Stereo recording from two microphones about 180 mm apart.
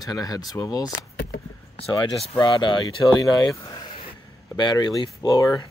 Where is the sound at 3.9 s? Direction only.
35° left (ahead or behind).